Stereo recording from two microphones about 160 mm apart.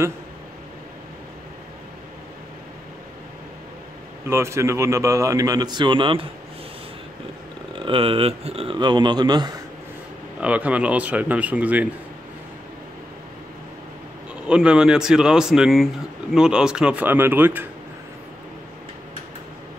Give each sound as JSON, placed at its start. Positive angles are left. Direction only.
{"t": 4.3, "sound": "a man's voice", "side_deg": -15}
{"t": 7.7, "sound": "speech", "side_deg": -35}
{"t": 10.4, "sound": "speech", "side_deg": -10}
{"t": 14.5, "sound": "speech", "side_deg": -5}